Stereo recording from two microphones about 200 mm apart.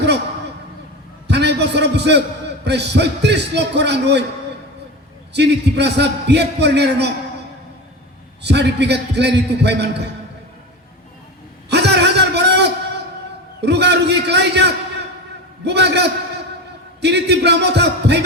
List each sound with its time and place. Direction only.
1.3 s a sound: 55° right (ahead or behind)
2.6 s a man's voice: 55° right (ahead or behind)
5.3 s a man's voice: 55° right (ahead or behind)
8.4 s a man's voice: 60° right (ahead or behind)
11.7 s a sound: 55° right (ahead or behind)
13.6 s a man's voice: 55° right (ahead or behind)